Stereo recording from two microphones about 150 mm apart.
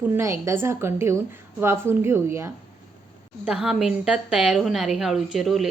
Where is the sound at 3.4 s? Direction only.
5° right (ahead or behind).